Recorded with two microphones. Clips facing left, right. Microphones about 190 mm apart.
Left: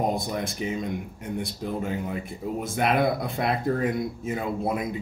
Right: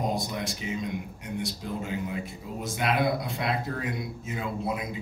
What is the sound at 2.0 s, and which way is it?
Speech, 55° left (ahead or behind).